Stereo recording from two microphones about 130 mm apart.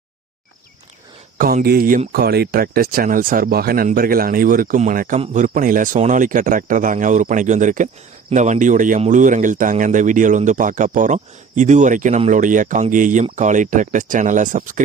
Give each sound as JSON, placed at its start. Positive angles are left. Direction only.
{"t": 1.4, "sound": "speech", "side_deg": -90}
{"t": 3.0, "sound": "speech", "side_deg": -90}
{"t": 8.3, "sound": "speech", "side_deg": -70}
{"t": 13.3, "sound": "speech", "side_deg": -70}